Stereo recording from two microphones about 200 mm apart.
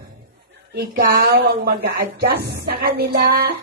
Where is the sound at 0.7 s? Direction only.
55° right (ahead or behind).